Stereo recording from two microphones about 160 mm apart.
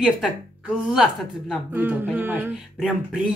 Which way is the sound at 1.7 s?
15° right (ahead or behind).